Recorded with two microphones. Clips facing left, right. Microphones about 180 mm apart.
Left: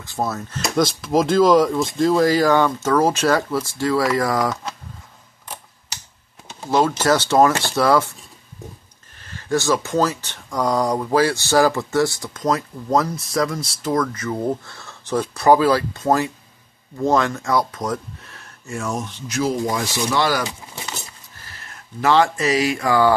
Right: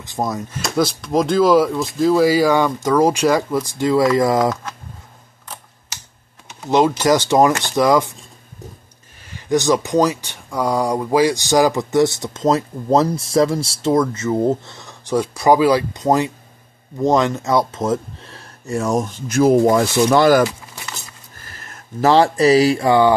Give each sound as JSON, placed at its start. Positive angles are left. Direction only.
{"t": 0.0, "sound": "speech", "side_deg": -15}
{"t": 0.6, "sound": "speech", "side_deg": 0}
{"t": 6.7, "sound": "speech", "side_deg": -15}
{"t": 9.2, "sound": "speech", "side_deg": -15}
{"t": 21.5, "sound": "speech", "side_deg": -45}